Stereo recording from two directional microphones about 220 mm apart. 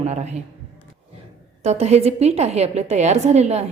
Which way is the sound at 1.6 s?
30° right (ahead or behind).